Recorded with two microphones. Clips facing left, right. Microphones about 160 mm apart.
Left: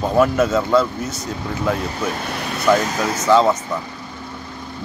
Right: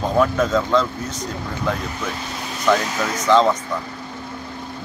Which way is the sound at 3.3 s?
10° left (ahead or behind).